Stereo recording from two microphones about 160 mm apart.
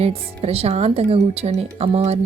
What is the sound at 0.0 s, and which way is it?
Speech, 40° right (ahead or behind).